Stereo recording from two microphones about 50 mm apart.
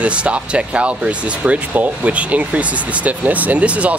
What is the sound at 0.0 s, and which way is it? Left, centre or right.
Speech, right.